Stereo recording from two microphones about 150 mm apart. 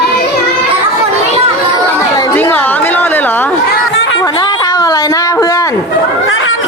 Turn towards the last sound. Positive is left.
turn(degrees=20)  # may be behind; listen again after turning